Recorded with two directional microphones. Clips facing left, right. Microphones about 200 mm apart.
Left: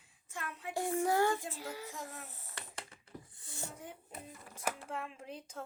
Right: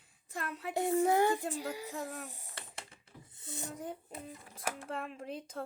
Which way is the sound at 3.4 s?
20° right (ahead or behind).